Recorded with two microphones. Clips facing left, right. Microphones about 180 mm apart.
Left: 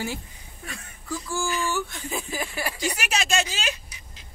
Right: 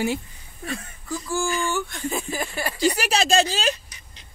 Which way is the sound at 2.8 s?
35° right (ahead or behind).